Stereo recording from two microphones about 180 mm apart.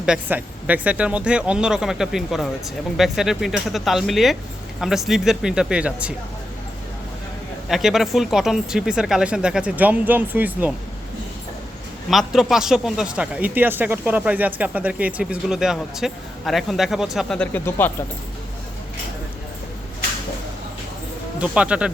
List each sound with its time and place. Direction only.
0.0 s speech: 5° right (ahead or behind)
7.7 s speech: centre (ahead or behind)
12.1 s speech: centre (ahead or behind)
21.3 s speech: 5° right (ahead or behind)